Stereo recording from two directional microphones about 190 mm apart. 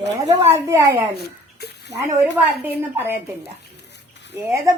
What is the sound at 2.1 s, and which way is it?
A woman's voice, 10° right (ahead or behind).